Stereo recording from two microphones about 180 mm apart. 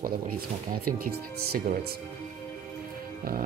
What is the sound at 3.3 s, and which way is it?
Speech, 55° right (ahead or behind).